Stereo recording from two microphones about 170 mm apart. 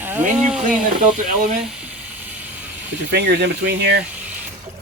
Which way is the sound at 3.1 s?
90° right.